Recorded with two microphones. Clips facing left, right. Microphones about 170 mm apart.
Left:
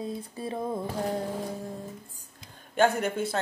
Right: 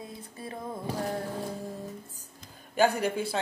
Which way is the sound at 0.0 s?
25° left (ahead or behind).